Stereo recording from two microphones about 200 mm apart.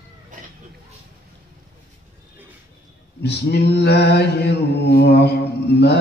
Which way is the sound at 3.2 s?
55° left (ahead or behind).